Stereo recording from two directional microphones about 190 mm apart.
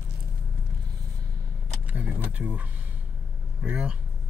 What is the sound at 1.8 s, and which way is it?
Speech, 10° right (ahead or behind).